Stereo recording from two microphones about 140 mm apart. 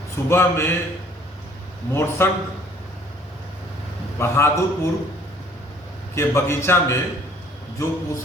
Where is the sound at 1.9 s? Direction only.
15° left (ahead or behind).